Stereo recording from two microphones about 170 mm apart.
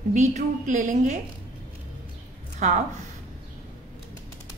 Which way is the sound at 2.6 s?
45° right (ahead or behind).